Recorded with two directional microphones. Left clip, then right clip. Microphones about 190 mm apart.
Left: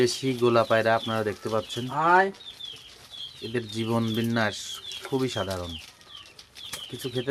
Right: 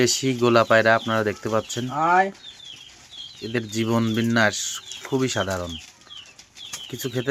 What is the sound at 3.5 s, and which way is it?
Speech, 25° right (ahead or behind).